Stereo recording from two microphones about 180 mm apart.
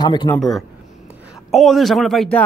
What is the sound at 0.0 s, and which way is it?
Speech, 25° left (ahead or behind).